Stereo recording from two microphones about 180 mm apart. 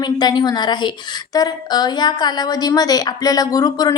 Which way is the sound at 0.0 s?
25° left (ahead or behind).